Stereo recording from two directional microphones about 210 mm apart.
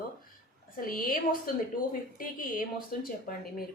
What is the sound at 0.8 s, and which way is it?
A woman's voice, 40° left (ahead or behind).